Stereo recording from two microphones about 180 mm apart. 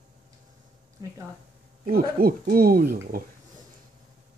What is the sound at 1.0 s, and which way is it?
Speech, 20° right (ahead or behind).